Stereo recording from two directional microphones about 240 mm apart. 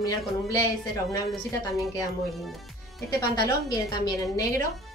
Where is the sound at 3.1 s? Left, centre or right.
Centre.